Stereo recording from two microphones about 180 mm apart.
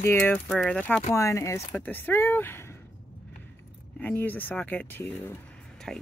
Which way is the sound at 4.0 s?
10° left (ahead or behind).